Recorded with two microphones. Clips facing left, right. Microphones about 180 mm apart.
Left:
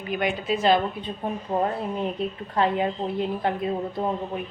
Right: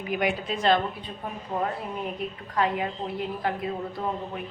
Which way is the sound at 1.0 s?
30° left (ahead or behind).